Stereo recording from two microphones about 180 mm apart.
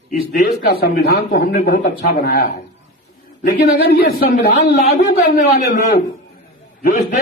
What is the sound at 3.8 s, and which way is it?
Speech, 60° left (ahead or behind).